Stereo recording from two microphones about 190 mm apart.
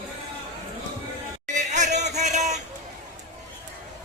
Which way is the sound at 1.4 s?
40° right (ahead or behind).